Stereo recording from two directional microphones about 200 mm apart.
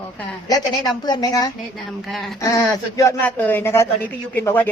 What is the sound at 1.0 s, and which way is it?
Speech, 20° left (ahead or behind).